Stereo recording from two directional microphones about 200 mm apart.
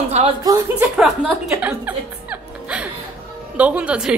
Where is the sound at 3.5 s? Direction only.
5° right (ahead or behind).